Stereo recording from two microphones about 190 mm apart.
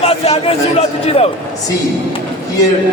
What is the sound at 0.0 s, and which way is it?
A man's voice, 30° left (ahead or behind).